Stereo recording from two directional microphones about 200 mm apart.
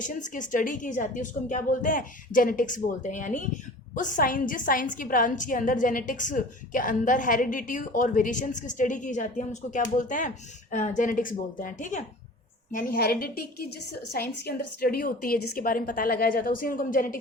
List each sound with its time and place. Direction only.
0.0 s a woman's voice: 40° left (ahead or behind)